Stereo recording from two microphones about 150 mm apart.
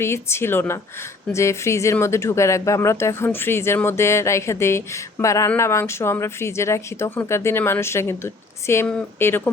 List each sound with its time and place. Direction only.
0.0 s speech: 15° left (ahead or behind)